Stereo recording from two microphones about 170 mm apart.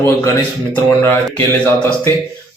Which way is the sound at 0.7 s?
15° left (ahead or behind).